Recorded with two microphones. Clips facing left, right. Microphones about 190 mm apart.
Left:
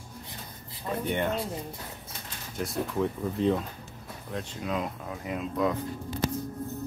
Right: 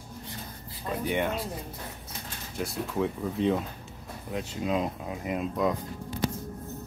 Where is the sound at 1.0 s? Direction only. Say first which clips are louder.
Right 1 dB; 5° right (ahead or behind).